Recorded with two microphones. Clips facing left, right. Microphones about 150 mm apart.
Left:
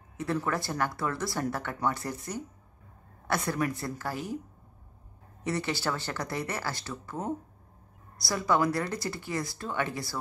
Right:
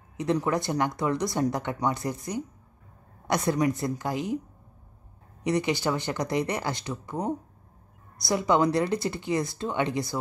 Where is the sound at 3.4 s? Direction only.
20° right (ahead or behind).